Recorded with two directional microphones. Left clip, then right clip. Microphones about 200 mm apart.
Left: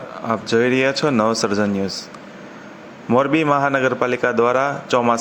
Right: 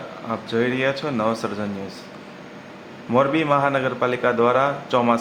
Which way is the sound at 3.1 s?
30° left (ahead or behind).